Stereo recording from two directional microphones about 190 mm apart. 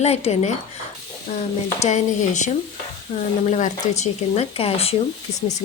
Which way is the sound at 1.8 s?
40° left (ahead or behind).